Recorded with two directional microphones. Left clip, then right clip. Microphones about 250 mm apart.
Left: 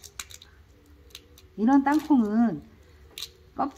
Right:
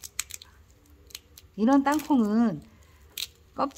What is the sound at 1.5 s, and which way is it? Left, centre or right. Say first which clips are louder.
A woman's voice: left 1 dB; right.